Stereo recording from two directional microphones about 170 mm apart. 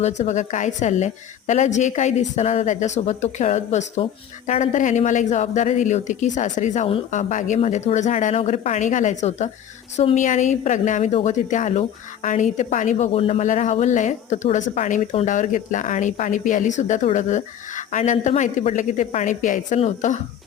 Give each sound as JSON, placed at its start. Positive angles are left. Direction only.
{"t": 0.2, "sound": "speech", "side_deg": 45}